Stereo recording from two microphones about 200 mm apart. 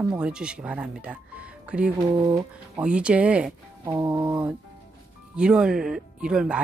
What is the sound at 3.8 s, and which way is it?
Music, 20° right (ahead or behind).